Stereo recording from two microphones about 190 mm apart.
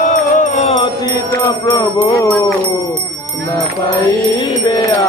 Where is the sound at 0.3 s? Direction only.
40° left (ahead or behind).